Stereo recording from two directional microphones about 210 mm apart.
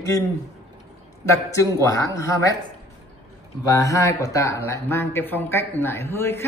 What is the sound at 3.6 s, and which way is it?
Speech, 15° left (ahead or behind).